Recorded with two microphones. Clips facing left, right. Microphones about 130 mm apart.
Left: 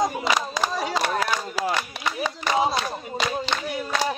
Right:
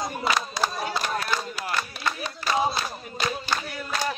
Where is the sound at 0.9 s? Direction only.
90° left.